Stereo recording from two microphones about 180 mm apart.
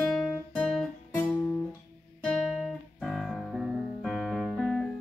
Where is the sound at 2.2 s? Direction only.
5° left (ahead or behind).